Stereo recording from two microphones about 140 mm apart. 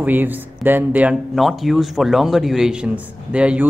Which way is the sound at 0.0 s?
15° right (ahead or behind).